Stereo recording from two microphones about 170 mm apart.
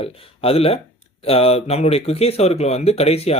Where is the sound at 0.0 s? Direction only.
35° left (ahead or behind).